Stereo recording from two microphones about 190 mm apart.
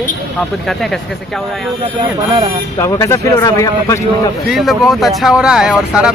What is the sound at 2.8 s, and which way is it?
Speech, 15° left (ahead or behind).